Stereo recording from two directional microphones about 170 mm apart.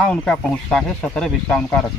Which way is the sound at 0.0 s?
5° left (ahead or behind).